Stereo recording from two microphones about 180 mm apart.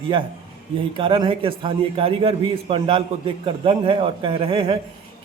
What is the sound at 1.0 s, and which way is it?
A man's voice, 30° right (ahead or behind).